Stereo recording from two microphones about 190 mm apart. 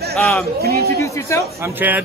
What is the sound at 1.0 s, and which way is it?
Speech, 15° left (ahead or behind).